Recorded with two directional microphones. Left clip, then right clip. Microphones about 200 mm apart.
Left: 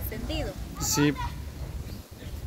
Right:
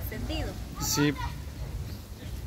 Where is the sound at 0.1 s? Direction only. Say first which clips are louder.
Left 2 dB; 40° left (ahead or behind).